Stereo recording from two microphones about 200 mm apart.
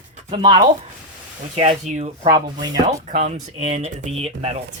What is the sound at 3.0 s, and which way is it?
Speech, 35° right (ahead or behind).